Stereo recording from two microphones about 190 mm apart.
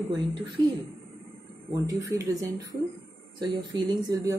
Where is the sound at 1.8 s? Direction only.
15° right (ahead or behind).